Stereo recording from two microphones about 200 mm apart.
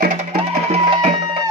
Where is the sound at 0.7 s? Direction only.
30° right (ahead or behind).